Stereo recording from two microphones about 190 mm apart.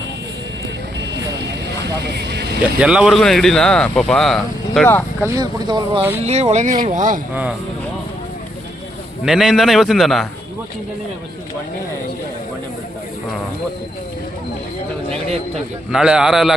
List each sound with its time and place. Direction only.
2.1 s vehicle: 60° right (ahead or behind)
2.7 s speech: 5° right (ahead or behind); by 5.3 s 10° left (ahead or behind)
5.4 s speech: 20° right (ahead or behind)
6.2 s speech: 35° right (ahead or behind)
9.2 s speech: centre (ahead or behind)
15.9 s speech: 5° right (ahead or behind)